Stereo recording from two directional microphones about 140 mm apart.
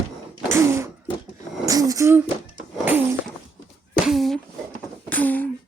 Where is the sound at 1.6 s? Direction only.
25° right (ahead or behind).